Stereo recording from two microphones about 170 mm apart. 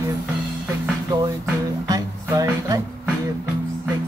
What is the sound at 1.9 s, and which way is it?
Music, 20° right (ahead or behind).